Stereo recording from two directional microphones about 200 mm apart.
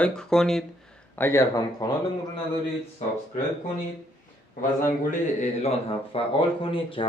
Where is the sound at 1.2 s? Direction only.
15° left (ahead or behind).